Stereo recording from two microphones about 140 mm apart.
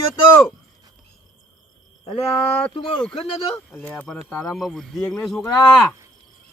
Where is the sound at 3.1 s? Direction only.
40° left (ahead or behind).